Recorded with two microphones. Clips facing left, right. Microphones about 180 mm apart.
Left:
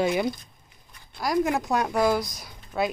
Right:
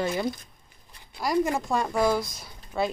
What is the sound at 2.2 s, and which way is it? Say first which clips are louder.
Speech: left 1 dB; 15° left (ahead or behind).